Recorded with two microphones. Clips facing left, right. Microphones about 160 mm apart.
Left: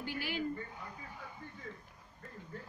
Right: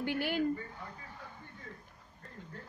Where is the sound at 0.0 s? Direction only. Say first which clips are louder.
Right 6 dB; 60° right (ahead or behind).